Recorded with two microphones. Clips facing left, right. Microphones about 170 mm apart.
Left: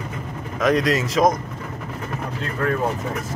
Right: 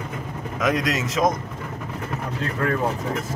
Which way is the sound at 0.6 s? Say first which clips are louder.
Left 4 dB; centre (ahead or behind).